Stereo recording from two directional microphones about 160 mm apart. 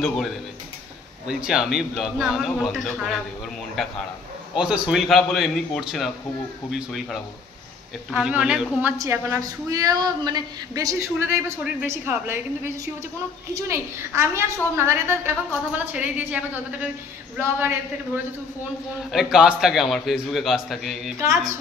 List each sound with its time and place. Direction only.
1.2 s a man's voice: 5° right (ahead or behind)
8.9 s a woman's voice: 20° right (ahead or behind); by 21.1 s centre (ahead or behind)